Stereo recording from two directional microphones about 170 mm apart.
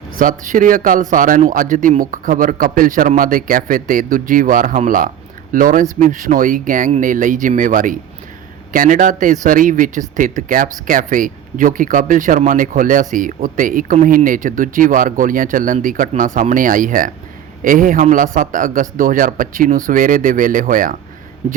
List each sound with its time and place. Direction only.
0.2 s speech: 50° right (ahead or behind)